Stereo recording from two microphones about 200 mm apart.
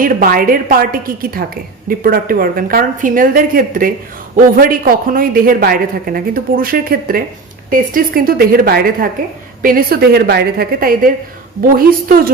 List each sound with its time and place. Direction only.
0.0 s a woman's voice: 45° right (ahead or behind)